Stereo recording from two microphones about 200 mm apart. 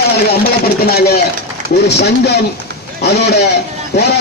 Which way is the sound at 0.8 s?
50° left (ahead or behind).